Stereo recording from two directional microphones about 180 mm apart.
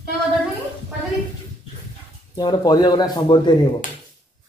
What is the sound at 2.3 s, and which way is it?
Speech, 20° left (ahead or behind).